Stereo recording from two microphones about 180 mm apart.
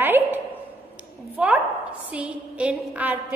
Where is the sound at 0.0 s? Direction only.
10° right (ahead or behind).